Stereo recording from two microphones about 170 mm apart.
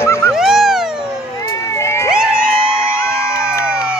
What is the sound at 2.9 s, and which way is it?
Music, 15° left (ahead or behind).